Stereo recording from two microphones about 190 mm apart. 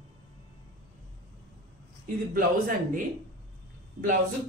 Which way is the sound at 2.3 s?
50° right (ahead or behind).